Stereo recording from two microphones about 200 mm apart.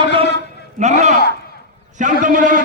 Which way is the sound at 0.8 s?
35° right (ahead or behind).